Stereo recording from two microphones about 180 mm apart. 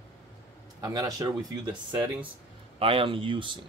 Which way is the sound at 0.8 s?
20° right (ahead or behind).